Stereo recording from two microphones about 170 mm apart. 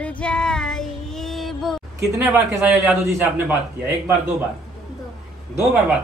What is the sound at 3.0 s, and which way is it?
Speech, 10° right (ahead or behind).